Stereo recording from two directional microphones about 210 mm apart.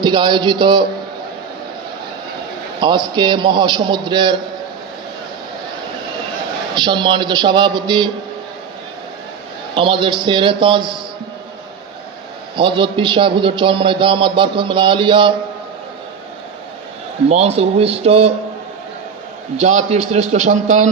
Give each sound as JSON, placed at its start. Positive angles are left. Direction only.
{"t": 0.0, "sound": "a man's voice", "side_deg": -20}
{"t": 2.8, "sound": "a man's voice", "side_deg": -20}
{"t": 6.7, "sound": "a man's voice", "side_deg": -20}
{"t": 9.7, "sound": "a man's voice", "side_deg": -25}
{"t": 12.5, "sound": "a man's voice", "side_deg": -25}
{"t": 17.2, "sound": "a man's voice", "side_deg": -30}
{"t": 19.5, "sound": "a man's voice", "side_deg": -30}